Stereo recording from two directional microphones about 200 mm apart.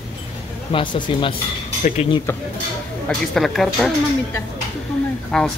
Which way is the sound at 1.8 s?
40° left (ahead or behind).